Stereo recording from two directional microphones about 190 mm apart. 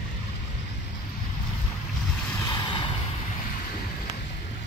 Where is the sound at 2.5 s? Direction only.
25° left (ahead or behind).